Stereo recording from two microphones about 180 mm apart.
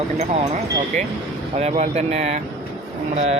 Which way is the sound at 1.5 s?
40° right (ahead or behind).